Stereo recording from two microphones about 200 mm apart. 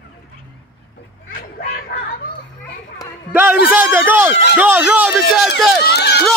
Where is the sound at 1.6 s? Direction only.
45° left (ahead or behind).